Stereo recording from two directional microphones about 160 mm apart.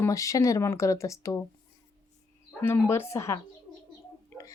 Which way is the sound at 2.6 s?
15° left (ahead or behind).